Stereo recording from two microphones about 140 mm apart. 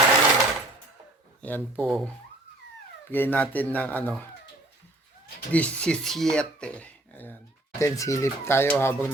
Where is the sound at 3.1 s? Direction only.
15° left (ahead or behind).